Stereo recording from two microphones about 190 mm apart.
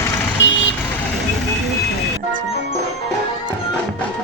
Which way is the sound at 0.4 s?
75° left (ahead or behind).